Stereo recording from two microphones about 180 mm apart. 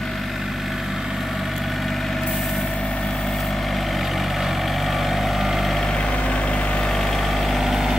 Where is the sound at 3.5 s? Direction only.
Centre (ahead or behind).